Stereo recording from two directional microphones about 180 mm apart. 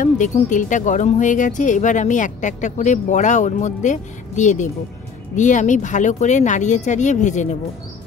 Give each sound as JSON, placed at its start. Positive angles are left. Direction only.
{"t": 0.0, "sound": "speech", "side_deg": 45}